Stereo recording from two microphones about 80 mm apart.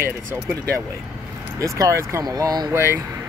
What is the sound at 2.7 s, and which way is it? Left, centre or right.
Speech, right.